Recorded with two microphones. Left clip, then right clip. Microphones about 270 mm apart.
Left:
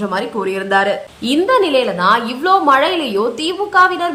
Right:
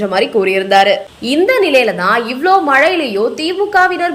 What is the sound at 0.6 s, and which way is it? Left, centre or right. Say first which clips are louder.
A woman's voice: right 3 dB; left.